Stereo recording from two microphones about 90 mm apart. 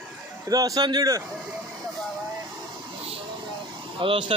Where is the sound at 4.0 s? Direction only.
75° right (ahead or behind).